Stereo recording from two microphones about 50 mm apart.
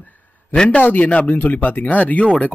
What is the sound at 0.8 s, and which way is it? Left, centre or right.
Speech, left.